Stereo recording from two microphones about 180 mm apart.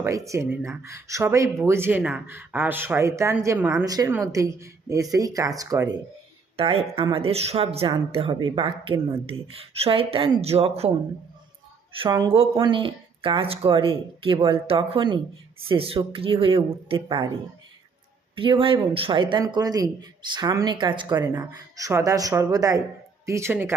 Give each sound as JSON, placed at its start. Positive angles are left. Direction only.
{"t": 0.0, "sound": "speech", "side_deg": -15}
{"t": 6.6, "sound": "speech", "side_deg": -30}
{"t": 11.9, "sound": "speech", "side_deg": -20}
{"t": 18.3, "sound": "speech", "side_deg": -30}